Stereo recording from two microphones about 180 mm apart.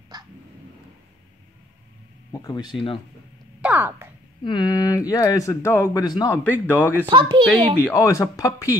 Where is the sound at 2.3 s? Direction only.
20° left (ahead or behind).